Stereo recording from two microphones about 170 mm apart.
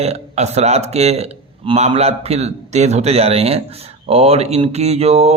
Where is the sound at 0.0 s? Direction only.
40° right (ahead or behind).